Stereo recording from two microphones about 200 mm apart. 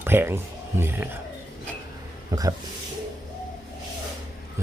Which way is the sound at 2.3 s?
15° right (ahead or behind).